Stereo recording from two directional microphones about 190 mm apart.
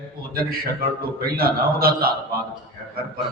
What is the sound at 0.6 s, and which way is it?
Mantra, 50° right (ahead or behind).